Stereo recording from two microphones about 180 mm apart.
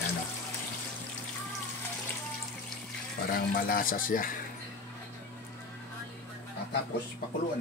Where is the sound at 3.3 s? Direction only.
55° left (ahead or behind).